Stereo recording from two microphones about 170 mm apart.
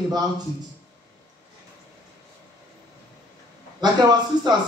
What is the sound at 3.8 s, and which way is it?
Speech, 25° right (ahead or behind).